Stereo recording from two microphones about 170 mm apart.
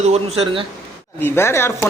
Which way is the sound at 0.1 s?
35° right (ahead or behind).